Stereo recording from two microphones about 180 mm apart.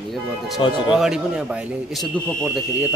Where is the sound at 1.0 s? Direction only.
5° right (ahead or behind).